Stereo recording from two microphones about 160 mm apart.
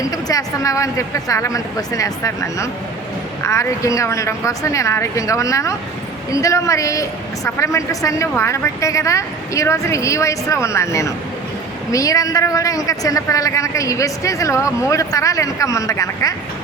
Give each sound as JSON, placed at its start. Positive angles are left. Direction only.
{"t": 0.0, "sound": "a woman's voice", "side_deg": 20}